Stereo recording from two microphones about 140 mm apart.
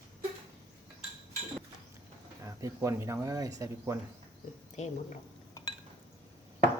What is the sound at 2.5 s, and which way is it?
Speech, 20° right (ahead or behind).